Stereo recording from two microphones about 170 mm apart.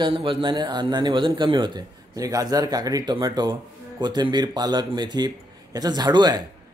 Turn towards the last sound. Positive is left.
turn(degrees=-25)  # may be behind; listen again after turning